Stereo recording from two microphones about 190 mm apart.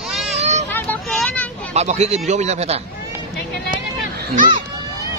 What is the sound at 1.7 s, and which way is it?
Speech, 35° right (ahead or behind).